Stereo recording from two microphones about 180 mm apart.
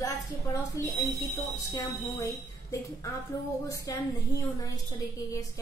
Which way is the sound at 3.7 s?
20° left (ahead or behind).